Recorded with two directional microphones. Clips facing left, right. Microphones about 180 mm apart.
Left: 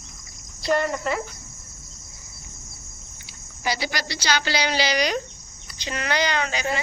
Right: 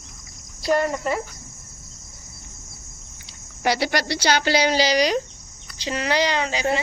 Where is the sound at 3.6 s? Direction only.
65° right (ahead or behind).